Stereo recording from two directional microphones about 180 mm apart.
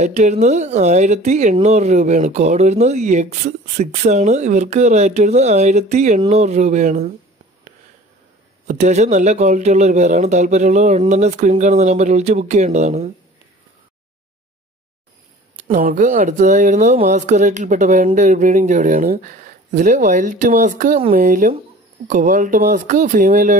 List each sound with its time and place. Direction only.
0.0 s speech: 40° right (ahead or behind)
8.6 s speech: 40° right (ahead or behind)
15.5 s speech: 45° right (ahead or behind)